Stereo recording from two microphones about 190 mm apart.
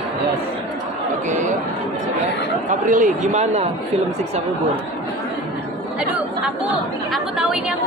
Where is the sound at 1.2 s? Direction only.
40° right (ahead or behind).